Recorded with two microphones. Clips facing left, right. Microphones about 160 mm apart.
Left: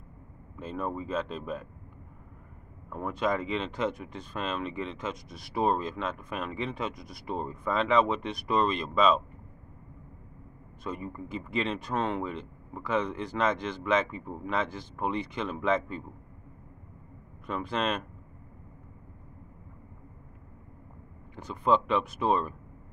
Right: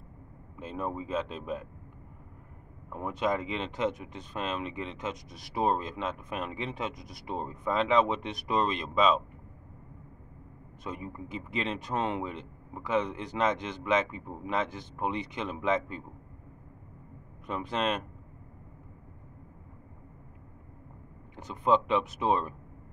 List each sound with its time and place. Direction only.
0.6 s speech: 15° right (ahead or behind)
2.9 s speech: 15° right (ahead or behind)
10.9 s speech: 5° right (ahead or behind)
17.5 s speech: 15° right (ahead or behind)
21.4 s speech: 20° right (ahead or behind)